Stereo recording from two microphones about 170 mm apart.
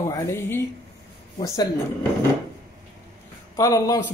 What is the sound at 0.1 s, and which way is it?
Speech, 15° left (ahead or behind).